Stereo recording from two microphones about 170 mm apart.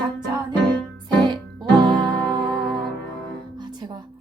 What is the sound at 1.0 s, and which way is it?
Music, 25° right (ahead or behind).